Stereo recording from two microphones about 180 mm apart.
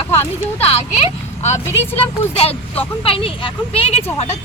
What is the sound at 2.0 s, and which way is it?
Speech, 30° left (ahead or behind).